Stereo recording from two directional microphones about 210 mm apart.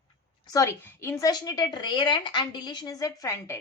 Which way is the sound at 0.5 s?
10° left (ahead or behind).